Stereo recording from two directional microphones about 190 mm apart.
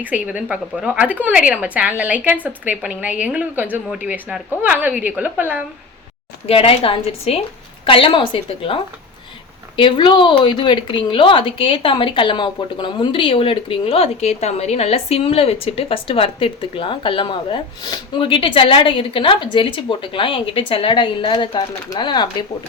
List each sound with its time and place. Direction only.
0.0 s a woman's voice: 5° right (ahead or behind)
6.5 s a woman's voice: 30° left (ahead or behind)